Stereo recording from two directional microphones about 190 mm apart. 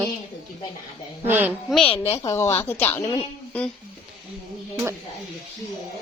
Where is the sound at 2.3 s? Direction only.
15° left (ahead or behind).